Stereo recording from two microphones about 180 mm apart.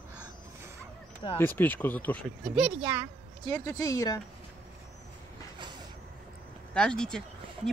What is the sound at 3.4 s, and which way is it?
Speech, 20° left (ahead or behind).